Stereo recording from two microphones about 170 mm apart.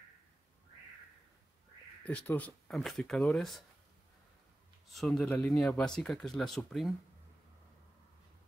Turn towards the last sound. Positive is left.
turn(degrees=0)  # may be behind; listen again after turning